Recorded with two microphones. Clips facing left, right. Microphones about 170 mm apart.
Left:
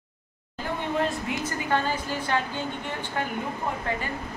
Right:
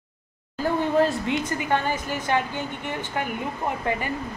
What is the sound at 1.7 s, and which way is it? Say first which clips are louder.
Speech: right 1 dB; 15° right (ahead or behind).